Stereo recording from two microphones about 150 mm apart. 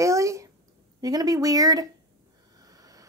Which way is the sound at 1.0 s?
25° right (ahead or behind).